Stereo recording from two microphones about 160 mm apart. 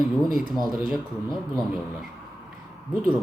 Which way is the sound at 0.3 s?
Centre (ahead or behind).